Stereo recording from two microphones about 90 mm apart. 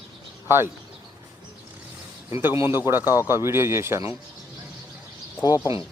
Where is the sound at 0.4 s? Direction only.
25° right (ahead or behind).